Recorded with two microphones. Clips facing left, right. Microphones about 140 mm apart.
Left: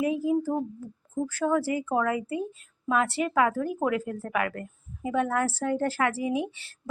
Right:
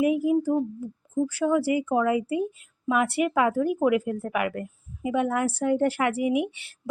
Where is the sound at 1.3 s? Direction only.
10° right (ahead or behind).